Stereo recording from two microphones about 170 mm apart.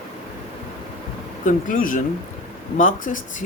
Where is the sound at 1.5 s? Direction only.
50° left (ahead or behind).